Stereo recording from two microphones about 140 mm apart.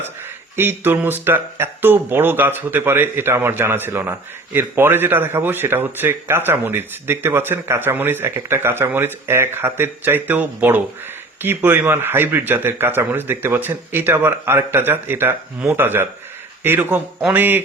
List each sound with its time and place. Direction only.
0.5 s speech: 15° right (ahead or behind)